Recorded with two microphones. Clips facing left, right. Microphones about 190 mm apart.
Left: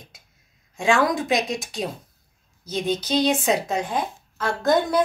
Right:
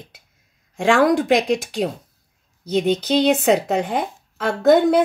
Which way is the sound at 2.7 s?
65° right (ahead or behind).